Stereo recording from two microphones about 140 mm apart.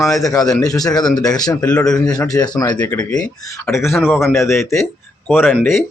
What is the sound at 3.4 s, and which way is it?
Speech, 20° left (ahead or behind).